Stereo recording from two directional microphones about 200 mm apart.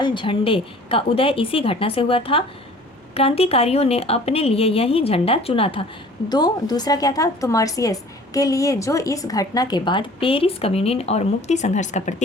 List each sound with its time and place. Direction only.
0.0 s a woman's voice: 25° left (ahead or behind)